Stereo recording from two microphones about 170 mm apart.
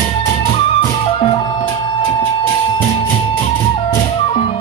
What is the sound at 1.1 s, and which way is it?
Music, 35° left (ahead or behind).